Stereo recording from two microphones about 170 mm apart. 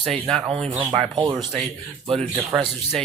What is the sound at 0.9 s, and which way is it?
Speech, 30° right (ahead or behind).